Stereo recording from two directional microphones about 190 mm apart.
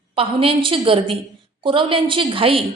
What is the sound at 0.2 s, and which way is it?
A woman's voice, 30° right (ahead or behind).